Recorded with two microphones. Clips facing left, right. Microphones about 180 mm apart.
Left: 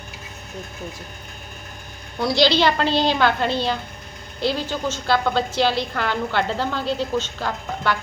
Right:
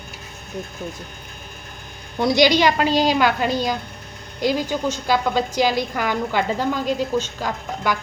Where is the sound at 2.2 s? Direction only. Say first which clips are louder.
Right 2 dB; 20° right (ahead or behind).